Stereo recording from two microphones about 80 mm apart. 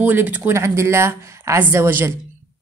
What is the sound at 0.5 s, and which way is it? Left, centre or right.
Speech, right.